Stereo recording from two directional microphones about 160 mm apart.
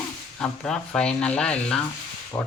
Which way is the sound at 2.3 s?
15° left (ahead or behind).